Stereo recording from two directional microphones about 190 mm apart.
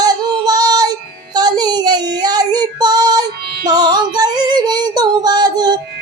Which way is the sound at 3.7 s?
20° right (ahead or behind).